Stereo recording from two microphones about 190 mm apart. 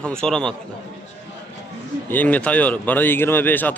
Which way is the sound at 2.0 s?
10° left (ahead or behind).